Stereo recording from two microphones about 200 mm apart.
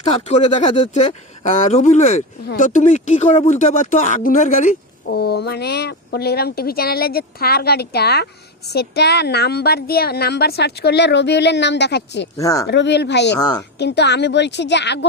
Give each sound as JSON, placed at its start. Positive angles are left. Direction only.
{"t": 0.3, "sound": "speech", "side_deg": 35}
{"t": 5.0, "sound": "speech", "side_deg": 55}
{"t": 12.4, "sound": "speech", "side_deg": 15}
{"t": 12.6, "sound": "speech", "side_deg": 60}
{"t": 13.3, "sound": "speech", "side_deg": 20}
{"t": 13.7, "sound": "speech", "side_deg": 55}